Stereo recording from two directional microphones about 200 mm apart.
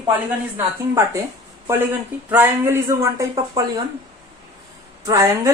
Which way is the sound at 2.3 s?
10° right (ahead or behind).